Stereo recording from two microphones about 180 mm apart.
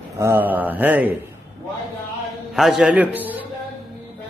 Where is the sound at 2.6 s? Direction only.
Centre (ahead or behind).